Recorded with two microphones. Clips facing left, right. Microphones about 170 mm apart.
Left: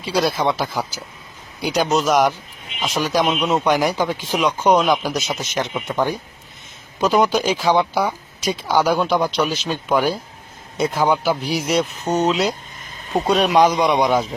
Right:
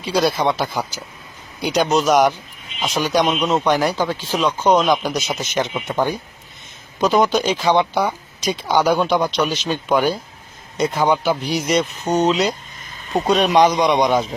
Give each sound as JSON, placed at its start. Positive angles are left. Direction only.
{"t": 0.0, "sound": "speech", "side_deg": 0}